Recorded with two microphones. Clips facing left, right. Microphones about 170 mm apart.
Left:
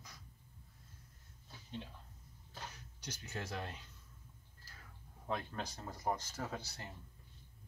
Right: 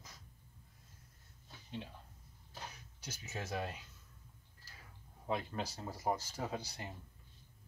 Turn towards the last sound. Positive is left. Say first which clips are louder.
# right 3 dB
turn(degrees=-15)  # may be behind; listen again after turning